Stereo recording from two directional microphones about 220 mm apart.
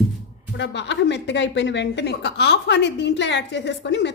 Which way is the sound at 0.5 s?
50° left (ahead or behind).